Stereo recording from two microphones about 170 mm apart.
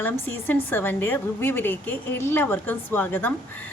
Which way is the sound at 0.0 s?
10° left (ahead or behind).